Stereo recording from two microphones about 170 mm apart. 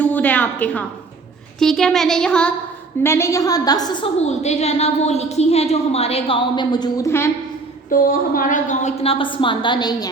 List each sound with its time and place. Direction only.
0.0 s a woman's voice: 10° left (ahead or behind)
3.0 s a woman's voice: 15° left (ahead or behind)
4.2 s a woman's voice: 40° left (ahead or behind); by 7.3 s 15° left (ahead or behind)
7.9 s a woman's voice: 55° left (ahead or behind); by 10.1 s 25° left (ahead or behind)